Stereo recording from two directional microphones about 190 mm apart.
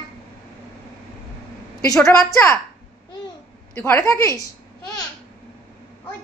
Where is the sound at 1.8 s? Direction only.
15° left (ahead or behind).